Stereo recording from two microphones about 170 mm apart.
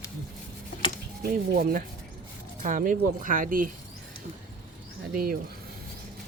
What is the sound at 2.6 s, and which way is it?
Speech, 50° right (ahead or behind).